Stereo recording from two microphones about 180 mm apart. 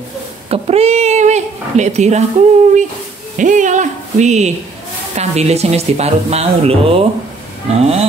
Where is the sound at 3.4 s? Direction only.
45° right (ahead or behind).